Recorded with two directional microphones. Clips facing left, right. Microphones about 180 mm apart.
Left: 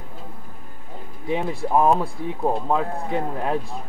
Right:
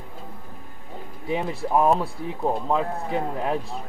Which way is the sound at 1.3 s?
Centre (ahead or behind).